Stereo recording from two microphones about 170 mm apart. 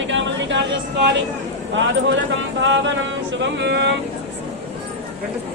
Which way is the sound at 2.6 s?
90° right.